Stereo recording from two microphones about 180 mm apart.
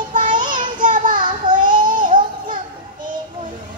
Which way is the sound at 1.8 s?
50° right (ahead or behind).